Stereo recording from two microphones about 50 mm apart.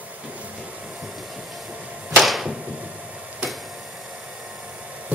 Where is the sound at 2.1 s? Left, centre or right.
Centre.